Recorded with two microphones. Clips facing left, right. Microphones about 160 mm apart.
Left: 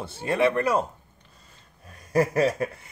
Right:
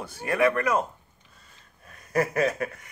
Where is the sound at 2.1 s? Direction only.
30° left (ahead or behind).